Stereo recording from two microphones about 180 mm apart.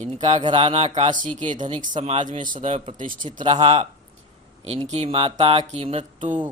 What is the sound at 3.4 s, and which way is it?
Speech, 30° right (ahead or behind).